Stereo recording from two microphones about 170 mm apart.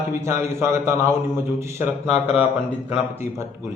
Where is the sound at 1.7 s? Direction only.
40° left (ahead or behind).